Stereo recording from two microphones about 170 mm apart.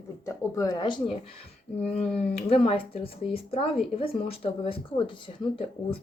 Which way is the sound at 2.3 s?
35° left (ahead or behind).